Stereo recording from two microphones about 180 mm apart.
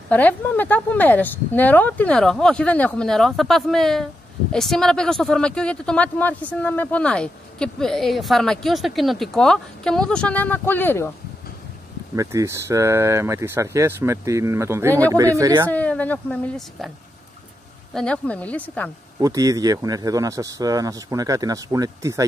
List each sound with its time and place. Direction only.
0.1 s speech: 10° left (ahead or behind)
12.2 s speech: 15° right (ahead or behind)
15.7 s a woman's voice: 10° left (ahead or behind)
17.9 s a woman's voice: 5° left (ahead or behind)
19.1 s speech: 20° right (ahead or behind)